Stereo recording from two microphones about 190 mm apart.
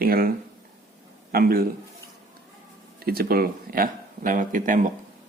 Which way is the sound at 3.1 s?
50° right (ahead or behind).